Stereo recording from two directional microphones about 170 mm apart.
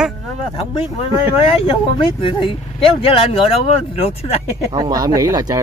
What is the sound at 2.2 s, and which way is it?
Speech, 30° left (ahead or behind).